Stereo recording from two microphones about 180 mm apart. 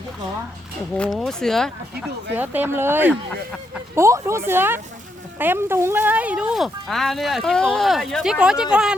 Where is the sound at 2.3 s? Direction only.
10° right (ahead or behind).